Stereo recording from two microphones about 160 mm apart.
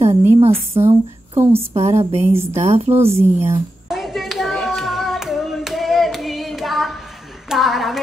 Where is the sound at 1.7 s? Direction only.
40° right (ahead or behind).